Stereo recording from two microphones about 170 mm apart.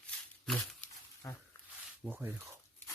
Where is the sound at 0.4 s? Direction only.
5° left (ahead or behind).